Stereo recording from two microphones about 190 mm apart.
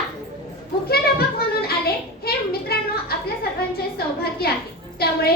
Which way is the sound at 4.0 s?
55° left (ahead or behind).